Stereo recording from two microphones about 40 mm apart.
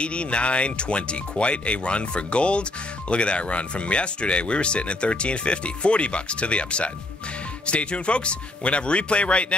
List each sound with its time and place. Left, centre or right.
0.0 s speech: left